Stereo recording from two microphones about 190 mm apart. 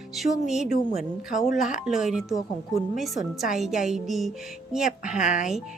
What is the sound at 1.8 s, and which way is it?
Speech, 5° right (ahead or behind).